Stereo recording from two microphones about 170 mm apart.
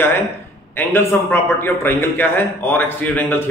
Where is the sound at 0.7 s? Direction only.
15° left (ahead or behind).